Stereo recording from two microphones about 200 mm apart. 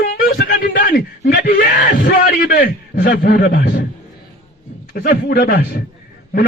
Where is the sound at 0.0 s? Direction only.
45° left (ahead or behind).